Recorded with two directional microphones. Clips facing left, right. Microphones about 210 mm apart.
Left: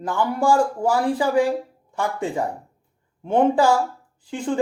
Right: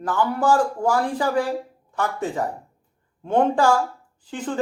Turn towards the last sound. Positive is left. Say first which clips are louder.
# left 3 dB
turn(degrees=10)  # may be behind; listen again after turning